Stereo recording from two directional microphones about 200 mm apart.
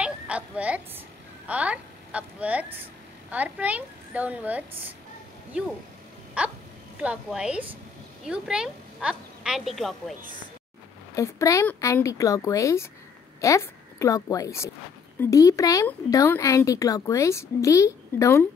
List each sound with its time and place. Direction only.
0.0 s a sound: 5° right (ahead or behind)
1.5 s a woman's voice: 5° right (ahead or behind)
6.4 s a woman's voice: 5° right (ahead or behind)
11.1 s a woman's voice: 15° left (ahead or behind)